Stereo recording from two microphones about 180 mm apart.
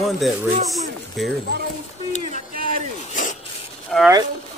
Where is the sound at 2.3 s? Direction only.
50° right (ahead or behind).